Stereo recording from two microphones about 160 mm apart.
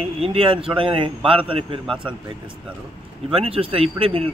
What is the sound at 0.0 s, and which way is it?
Speech, 35° right (ahead or behind).